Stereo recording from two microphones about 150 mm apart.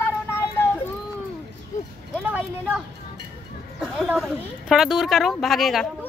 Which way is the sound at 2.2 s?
10° right (ahead or behind).